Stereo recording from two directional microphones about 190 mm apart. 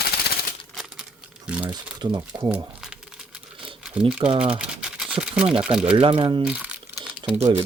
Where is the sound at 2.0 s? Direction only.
20° right (ahead or behind).